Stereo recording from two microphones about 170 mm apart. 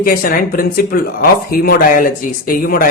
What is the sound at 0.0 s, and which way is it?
Speech, 55° left (ahead or behind).